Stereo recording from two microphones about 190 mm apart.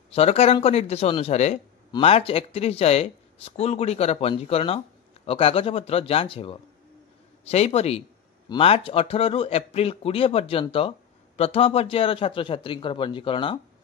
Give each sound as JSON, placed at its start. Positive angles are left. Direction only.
{"t": 0.1, "sound": "a man's voice", "side_deg": 30}